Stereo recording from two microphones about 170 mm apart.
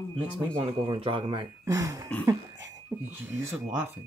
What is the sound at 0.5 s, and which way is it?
Speech, 30° right (ahead or behind).